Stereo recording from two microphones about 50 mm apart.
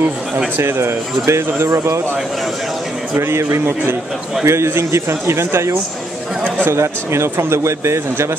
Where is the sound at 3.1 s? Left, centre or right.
Right.